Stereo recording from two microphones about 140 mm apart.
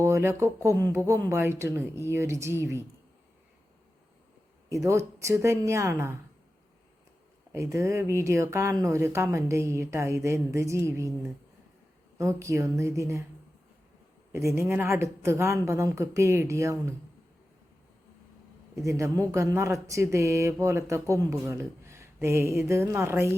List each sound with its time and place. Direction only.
0.0 s speech: 20° right (ahead or behind)
4.7 s speech: 20° right (ahead or behind)
7.5 s speech: 20° right (ahead or behind)
14.3 s speech: 20° right (ahead or behind)
18.9 s speech: 20° right (ahead or behind)